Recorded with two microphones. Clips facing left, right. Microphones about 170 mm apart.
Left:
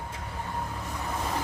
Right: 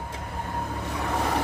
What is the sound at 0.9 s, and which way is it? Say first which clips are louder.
Vehicle: right 7 dB; 70° right (ahead or behind).